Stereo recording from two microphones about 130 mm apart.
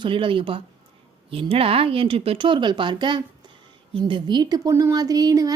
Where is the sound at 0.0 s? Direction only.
40° right (ahead or behind).